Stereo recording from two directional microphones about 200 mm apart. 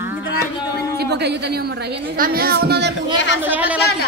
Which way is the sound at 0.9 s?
55° right (ahead or behind).